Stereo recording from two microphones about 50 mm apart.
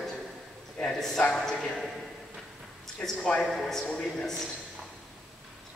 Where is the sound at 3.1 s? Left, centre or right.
Centre.